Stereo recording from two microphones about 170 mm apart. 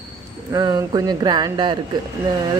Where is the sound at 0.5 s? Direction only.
25° right (ahead or behind).